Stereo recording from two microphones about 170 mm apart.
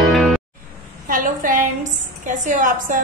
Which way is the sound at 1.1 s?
50° right (ahead or behind).